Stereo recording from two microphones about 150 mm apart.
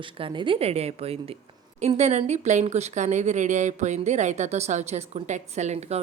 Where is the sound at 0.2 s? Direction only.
35° right (ahead or behind).